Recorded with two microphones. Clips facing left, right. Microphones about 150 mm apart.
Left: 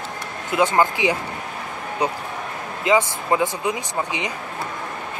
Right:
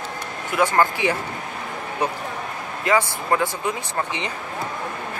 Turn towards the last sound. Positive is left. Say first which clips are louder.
# left 1 dB
turn(degrees=15)  # may be behind; listen again after turning